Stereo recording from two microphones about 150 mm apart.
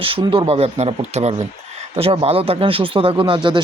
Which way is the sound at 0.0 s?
35° right (ahead or behind).